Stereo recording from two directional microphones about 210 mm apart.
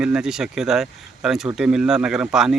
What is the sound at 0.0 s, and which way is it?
Speech, 5° right (ahead or behind).